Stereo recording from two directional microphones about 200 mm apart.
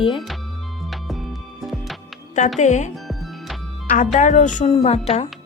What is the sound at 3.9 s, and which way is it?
A woman's voice, 40° left (ahead or behind).